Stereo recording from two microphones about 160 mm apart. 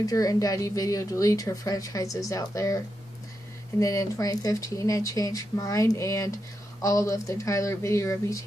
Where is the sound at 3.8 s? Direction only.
20° left (ahead or behind).